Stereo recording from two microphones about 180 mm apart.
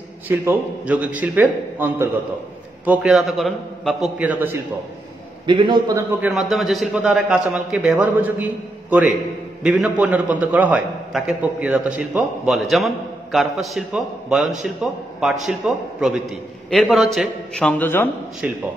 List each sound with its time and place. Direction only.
0.3 s a man's voice: 10° right (ahead or behind)
5.5 s a man's voice: 25° right (ahead or behind)
5.9 s a man's voice: 5° right (ahead or behind)
9.6 s a man's voice: 5° right (ahead or behind); by 18.0 s 10° left (ahead or behind)
18.4 s a man's voice: 10° right (ahead or behind)